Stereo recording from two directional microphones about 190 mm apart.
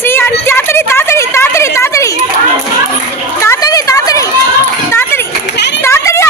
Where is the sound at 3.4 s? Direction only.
15° left (ahead or behind).